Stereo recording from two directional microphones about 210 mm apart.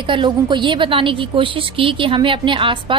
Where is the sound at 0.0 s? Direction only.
25° right (ahead or behind).